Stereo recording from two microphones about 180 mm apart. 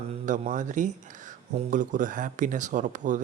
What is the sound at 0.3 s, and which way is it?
Speech, 45° right (ahead or behind).